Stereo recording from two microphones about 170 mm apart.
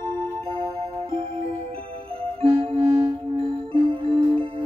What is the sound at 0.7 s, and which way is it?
Music, 35° right (ahead or behind).